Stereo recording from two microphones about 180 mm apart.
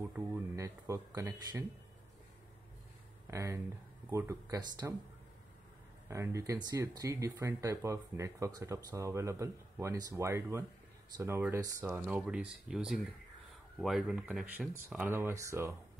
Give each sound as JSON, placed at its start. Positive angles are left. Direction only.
{"t": 0.1, "sound": "speech", "side_deg": -15}
{"t": 3.3, "sound": "speech", "side_deg": -15}
{"t": 6.0, "sound": "speech", "side_deg": -15}